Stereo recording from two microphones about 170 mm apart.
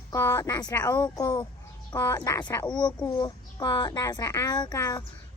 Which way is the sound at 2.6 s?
25° left (ahead or behind).